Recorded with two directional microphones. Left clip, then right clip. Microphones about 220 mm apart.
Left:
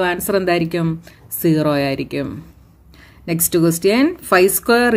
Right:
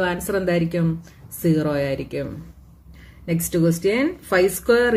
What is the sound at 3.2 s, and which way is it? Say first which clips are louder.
Speech: left 4 dB; 45° left (ahead or behind).